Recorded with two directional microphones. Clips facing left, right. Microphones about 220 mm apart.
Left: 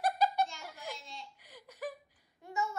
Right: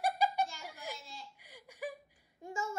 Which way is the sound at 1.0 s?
Centre (ahead or behind).